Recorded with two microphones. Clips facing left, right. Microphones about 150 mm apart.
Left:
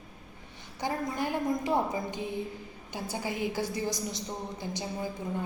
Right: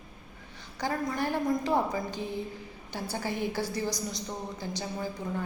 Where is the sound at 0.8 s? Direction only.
20° left (ahead or behind).